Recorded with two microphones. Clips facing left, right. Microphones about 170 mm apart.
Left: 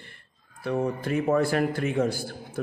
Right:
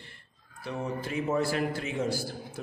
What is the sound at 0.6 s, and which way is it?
A man's voice, 55° left (ahead or behind).